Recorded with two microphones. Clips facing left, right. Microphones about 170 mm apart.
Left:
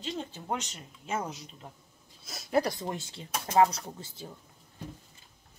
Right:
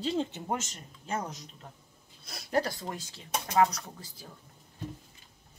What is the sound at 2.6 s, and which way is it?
Speech, 20° left (ahead or behind).